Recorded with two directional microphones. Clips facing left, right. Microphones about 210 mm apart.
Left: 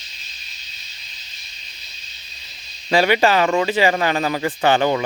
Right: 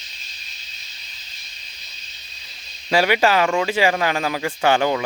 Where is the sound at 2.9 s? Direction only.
5° right (ahead or behind).